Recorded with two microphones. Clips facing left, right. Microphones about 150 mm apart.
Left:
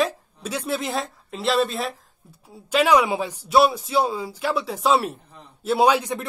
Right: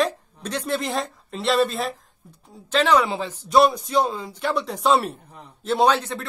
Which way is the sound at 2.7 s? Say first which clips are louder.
Left 1 dB; 10° left (ahead or behind).